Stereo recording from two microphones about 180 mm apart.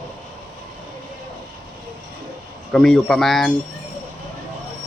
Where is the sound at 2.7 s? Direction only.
Centre (ahead or behind).